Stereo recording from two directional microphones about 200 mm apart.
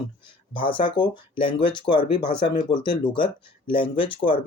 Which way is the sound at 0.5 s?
25° left (ahead or behind).